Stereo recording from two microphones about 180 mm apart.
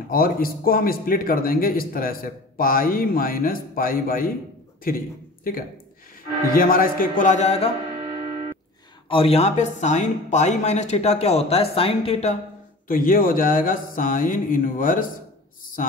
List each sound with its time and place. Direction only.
0.1 s a man's voice: 55° left (ahead or behind); by 7.7 s 35° left (ahead or behind)
9.1 s speech: 35° left (ahead or behind)
12.8 s a man's voice: 50° left (ahead or behind)